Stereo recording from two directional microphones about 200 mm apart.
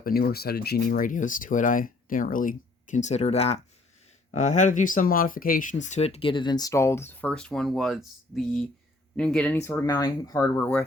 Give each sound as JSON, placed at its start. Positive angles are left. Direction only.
{"t": 0.0, "sound": "speech", "side_deg": 50}